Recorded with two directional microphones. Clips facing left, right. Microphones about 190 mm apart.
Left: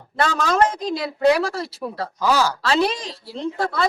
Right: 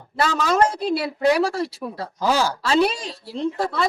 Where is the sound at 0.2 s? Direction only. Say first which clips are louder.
Even; 5° right (ahead or behind).